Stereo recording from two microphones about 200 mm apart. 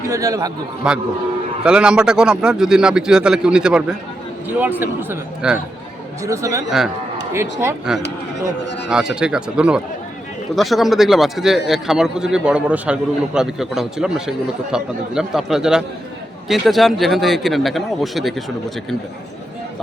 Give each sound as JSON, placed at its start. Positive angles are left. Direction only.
{"t": 0.1, "sound": "a man's voice", "side_deg": -15}
{"t": 0.8, "sound": "a man's voice", "side_deg": -5}
{"t": 8.9, "sound": "a man's voice", "side_deg": -5}